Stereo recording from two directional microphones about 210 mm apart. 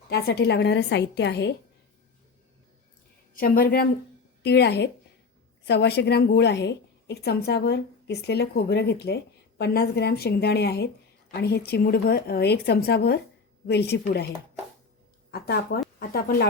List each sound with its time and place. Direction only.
0.1 s a woman's voice: 50° left (ahead or behind)
3.3 s a woman's voice: 45° left (ahead or behind)
15.3 s a woman's voice: 50° left (ahead or behind)